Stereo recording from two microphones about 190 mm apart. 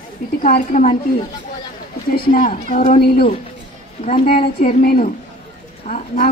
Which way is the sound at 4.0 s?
45° left (ahead or behind).